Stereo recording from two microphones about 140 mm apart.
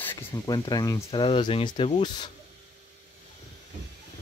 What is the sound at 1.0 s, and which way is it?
Speech, 40° left (ahead or behind).